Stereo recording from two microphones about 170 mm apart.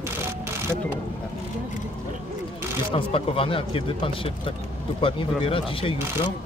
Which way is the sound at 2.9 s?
30° left (ahead or behind).